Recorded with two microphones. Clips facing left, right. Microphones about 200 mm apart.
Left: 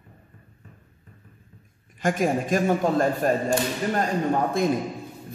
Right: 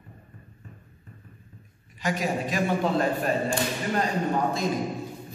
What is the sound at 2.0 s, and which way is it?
A man's voice, 50° left (ahead or behind).